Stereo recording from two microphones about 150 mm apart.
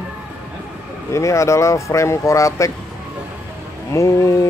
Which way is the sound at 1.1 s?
20° left (ahead or behind).